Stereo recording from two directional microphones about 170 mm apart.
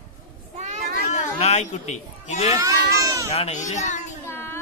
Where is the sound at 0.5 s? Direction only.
45° right (ahead or behind).